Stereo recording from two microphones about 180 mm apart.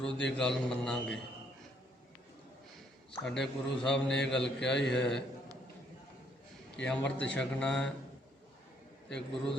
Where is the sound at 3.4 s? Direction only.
5° left (ahead or behind).